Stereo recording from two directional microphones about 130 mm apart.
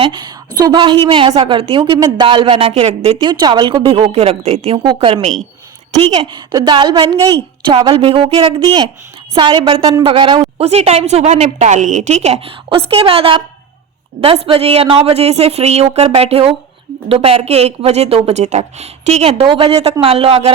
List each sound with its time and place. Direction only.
0.0 s a woman's voice: 40° right (ahead or behind)
3.2 s a woman's voice: 35° right (ahead or behind)
6.2 s a woman's voice: 35° right (ahead or behind)
10.6 s a woman's voice: 55° right (ahead or behind)